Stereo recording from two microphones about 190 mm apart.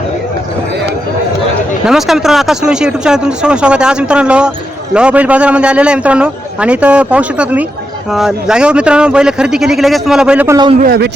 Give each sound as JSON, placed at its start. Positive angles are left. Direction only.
{"t": 1.9, "sound": "a man's voice", "side_deg": 0}
{"t": 10.8, "sound": "speech", "side_deg": -50}